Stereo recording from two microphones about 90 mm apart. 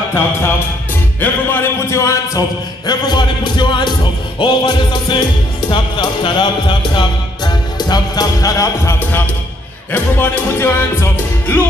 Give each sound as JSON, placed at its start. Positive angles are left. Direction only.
{"t": 1.2, "sound": "music", "side_deg": 20}
{"t": 1.9, "sound": "speech", "side_deg": 35}
{"t": 2.9, "sound": "speech", "side_deg": 55}
{"t": 9.9, "sound": "music", "side_deg": 20}